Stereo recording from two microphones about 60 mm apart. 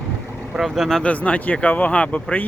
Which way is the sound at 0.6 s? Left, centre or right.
Centre.